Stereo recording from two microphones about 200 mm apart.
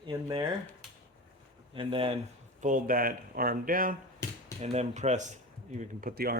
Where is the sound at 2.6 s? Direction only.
40° right (ahead or behind).